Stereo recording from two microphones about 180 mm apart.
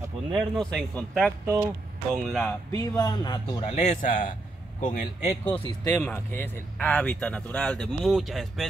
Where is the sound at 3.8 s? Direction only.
45° left (ahead or behind).